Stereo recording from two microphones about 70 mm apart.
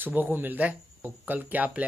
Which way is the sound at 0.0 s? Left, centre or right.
Right.